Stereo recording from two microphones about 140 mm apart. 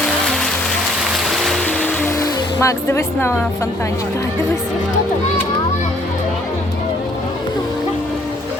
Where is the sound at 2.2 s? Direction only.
20° left (ahead or behind).